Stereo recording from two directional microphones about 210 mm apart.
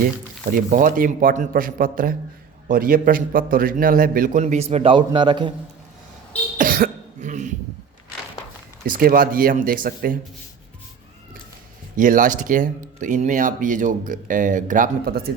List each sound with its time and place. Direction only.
0.5 s a man's voice: 40° right (ahead or behind); by 5.5 s 20° right (ahead or behind)
6.6 s cough: 40° right (ahead or behind)
8.9 s a man's voice: 45° right (ahead or behind)
11.9 s speech: 40° right (ahead or behind)